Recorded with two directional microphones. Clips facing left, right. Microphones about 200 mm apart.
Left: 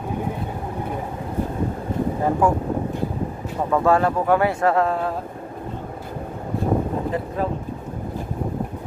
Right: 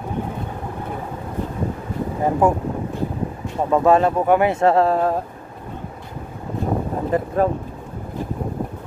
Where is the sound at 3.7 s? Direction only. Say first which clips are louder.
Right 3 dB; 20° right (ahead or behind); by 5.1 s 40° right (ahead or behind).